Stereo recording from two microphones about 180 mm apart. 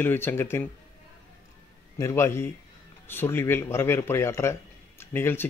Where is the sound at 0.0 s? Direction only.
10° left (ahead or behind).